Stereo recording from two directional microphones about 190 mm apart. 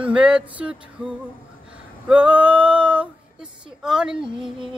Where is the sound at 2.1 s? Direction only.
5° right (ahead or behind).